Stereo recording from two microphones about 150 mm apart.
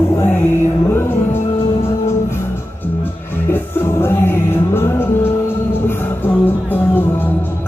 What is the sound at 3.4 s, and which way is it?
Music, 15° left (ahead or behind).